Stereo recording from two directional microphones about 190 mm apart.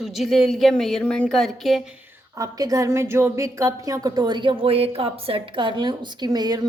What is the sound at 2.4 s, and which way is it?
A woman's voice, 20° right (ahead or behind).